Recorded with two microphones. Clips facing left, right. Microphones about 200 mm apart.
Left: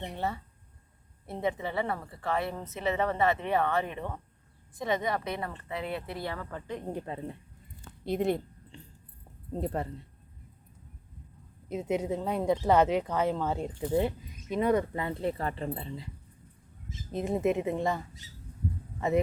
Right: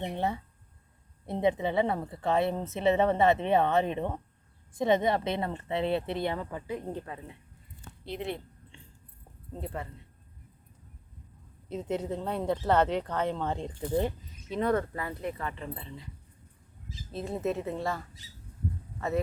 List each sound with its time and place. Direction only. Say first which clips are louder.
0.0 s a woman's voice: right 3 dB; 15° right (ahead or behind)
6.9 s a woman's voice: left 2 dB; 25° left (ahead or behind)
8.0 s a woman's voice: left 7 dB; 45° left (ahead or behind)
11.7 s speech: left 2 dB; 10° left (ahead or behind); by 16.0 s 35° left (ahead or behind)
17.1 s speech: left 4 dB; 15° left (ahead or behind)